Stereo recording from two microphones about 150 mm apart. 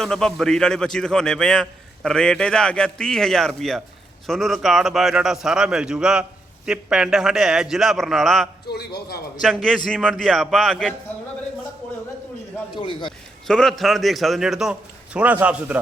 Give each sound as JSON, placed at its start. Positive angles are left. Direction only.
{"t": 0.0, "sound": "a man's voice", "side_deg": 5}
{"t": 8.6, "sound": "a man's voice", "side_deg": 90}
{"t": 9.4, "sound": "a man's voice", "side_deg": 0}
{"t": 12.7, "sound": "speech", "side_deg": 35}
{"t": 13.5, "sound": "a man's voice", "side_deg": 5}